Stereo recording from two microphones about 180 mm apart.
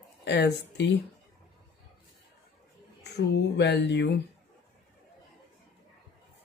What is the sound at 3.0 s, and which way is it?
Speech, 70° left (ahead or behind).